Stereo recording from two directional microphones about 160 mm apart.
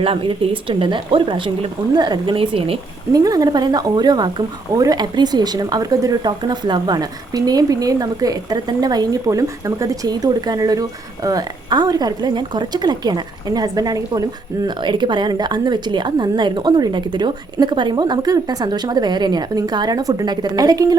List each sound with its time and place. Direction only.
0.0 s speech: 35° right (ahead or behind)
3.1 s a woman's voice: 25° right (ahead or behind)